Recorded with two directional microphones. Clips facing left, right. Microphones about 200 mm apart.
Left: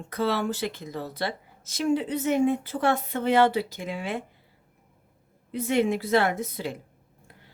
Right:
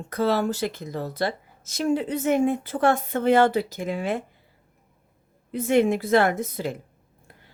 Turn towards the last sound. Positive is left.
turn(degrees=-50)  # may be behind; listen again after turning